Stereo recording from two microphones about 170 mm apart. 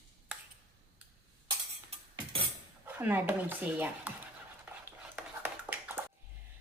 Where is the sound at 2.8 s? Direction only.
10° right (ahead or behind).